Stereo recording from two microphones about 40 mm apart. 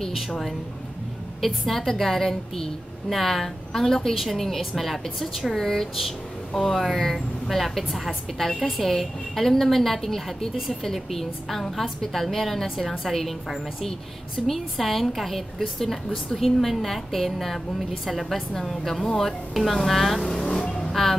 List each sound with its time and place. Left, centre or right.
1.4 s a woman's voice: centre
19.5 s speech: centre
20.2 s vehicle: centre
20.9 s speech: centre